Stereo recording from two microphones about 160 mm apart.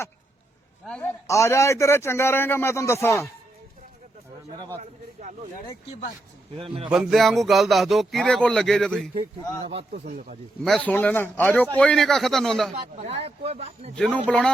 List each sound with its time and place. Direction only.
0.9 s a man's voice: 5° left (ahead or behind)
1.3 s a man's voice: 20° left (ahead or behind)
6.6 s speech: 35° right (ahead or behind)
6.9 s speech: 5° right (ahead or behind)
10.1 s speech: 55° right (ahead or behind)
10.6 s a man's voice: 5° left (ahead or behind)
13.0 s speech: 40° right (ahead or behind)
13.9 s speech: 5° left (ahead or behind)